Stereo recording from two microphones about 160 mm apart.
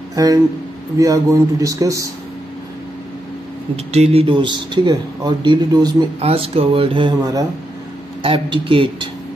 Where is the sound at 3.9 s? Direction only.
40° right (ahead or behind).